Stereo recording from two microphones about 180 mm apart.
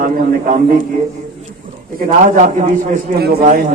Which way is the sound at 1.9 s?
45° right (ahead or behind).